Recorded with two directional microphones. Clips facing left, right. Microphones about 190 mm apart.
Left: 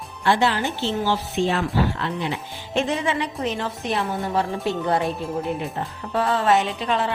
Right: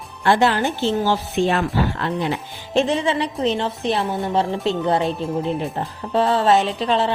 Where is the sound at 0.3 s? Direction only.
50° right (ahead or behind).